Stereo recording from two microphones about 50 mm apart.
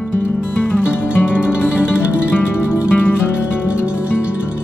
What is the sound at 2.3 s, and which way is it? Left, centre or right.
Music, left.